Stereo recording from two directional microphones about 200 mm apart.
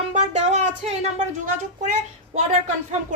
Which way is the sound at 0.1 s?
35° right (ahead or behind).